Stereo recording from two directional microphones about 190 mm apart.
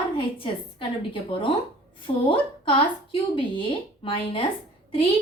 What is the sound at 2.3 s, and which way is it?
A woman's voice, 25° left (ahead or behind).